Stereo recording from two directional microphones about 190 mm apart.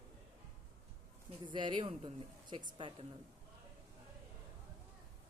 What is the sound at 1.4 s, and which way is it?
Speech, 25° right (ahead or behind).